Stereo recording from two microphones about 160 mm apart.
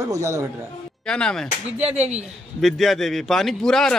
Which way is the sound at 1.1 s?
5° left (ahead or behind).